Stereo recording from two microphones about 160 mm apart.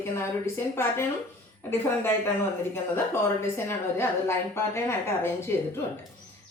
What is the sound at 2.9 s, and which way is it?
Speech, 15° left (ahead or behind).